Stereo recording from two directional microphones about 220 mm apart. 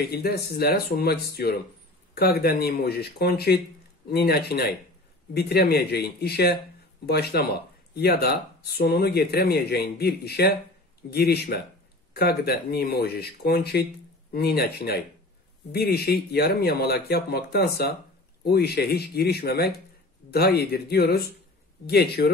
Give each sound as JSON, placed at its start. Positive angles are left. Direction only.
{"t": 0.0, "sound": "speech", "side_deg": 45}